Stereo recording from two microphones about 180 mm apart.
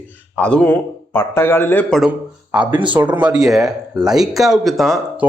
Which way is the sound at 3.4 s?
Centre (ahead or behind).